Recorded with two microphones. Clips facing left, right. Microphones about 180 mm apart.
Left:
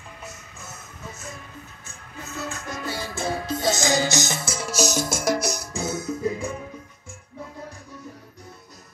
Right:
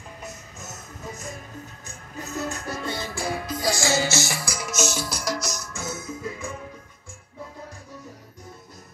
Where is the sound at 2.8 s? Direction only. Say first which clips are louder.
Even; 10° left (ahead or behind).